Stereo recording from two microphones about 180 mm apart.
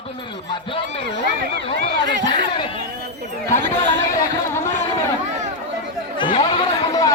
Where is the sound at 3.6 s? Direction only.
80° right.